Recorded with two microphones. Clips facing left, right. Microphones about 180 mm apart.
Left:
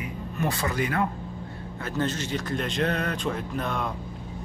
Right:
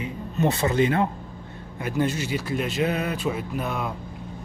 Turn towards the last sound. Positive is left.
turn(degrees=-5)  # may be behind; listen again after turning